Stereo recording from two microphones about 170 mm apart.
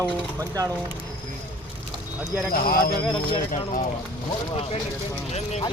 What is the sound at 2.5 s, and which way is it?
Speech, 60° left (ahead or behind).